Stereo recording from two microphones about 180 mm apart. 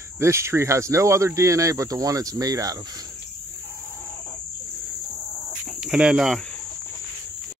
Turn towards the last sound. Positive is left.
turn(degrees=-5)  # may be behind; listen again after turning